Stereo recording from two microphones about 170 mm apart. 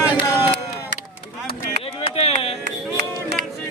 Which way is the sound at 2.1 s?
35° left (ahead or behind).